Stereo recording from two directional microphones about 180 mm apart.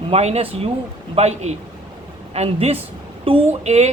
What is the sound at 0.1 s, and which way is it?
Speech, 35° right (ahead or behind).